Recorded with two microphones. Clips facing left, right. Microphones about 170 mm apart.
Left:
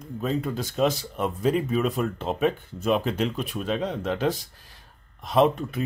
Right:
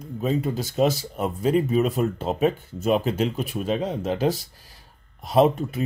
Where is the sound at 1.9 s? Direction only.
40° right (ahead or behind).